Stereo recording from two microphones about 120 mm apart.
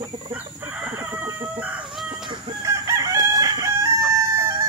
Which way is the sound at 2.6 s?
25° right (ahead or behind).